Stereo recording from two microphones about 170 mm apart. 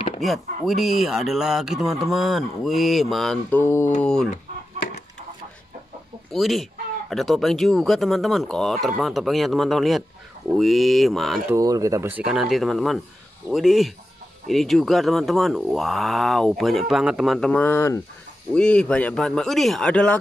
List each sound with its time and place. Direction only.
0.2 s speech: centre (ahead or behind)
6.3 s speech: centre (ahead or behind)
11.4 s speech: 20° right (ahead or behind)
12.3 s speech: centre (ahead or behind)